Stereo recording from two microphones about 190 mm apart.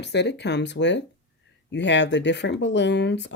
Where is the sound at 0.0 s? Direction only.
65° left (ahead or behind).